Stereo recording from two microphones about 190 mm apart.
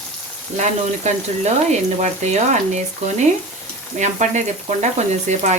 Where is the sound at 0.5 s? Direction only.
35° right (ahead or behind).